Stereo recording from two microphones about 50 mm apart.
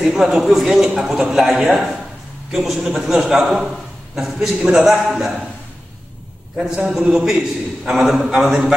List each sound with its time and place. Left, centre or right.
0.0 s a man's voice: centre
6.7 s a man's voice: centre